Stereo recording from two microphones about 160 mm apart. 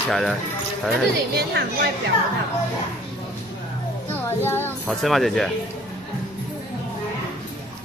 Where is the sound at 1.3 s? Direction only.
85° right.